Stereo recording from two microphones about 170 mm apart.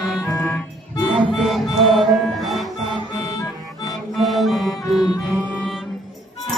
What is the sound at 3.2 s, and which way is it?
Music, 20° left (ahead or behind).